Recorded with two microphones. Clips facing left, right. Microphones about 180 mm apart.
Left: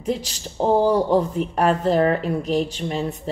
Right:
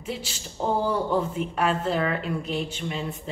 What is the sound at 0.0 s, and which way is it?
Speech, 40° left (ahead or behind).